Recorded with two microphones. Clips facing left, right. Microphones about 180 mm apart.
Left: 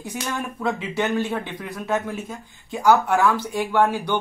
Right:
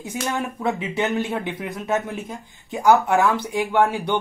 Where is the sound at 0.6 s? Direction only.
20° right (ahead or behind).